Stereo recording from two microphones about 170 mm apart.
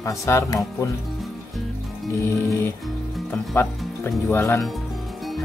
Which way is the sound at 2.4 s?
15° left (ahead or behind).